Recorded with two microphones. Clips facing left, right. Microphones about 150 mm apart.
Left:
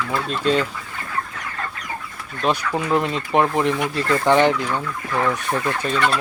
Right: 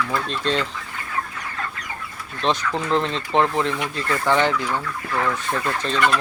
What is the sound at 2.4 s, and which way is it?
Speech, 10° left (ahead or behind).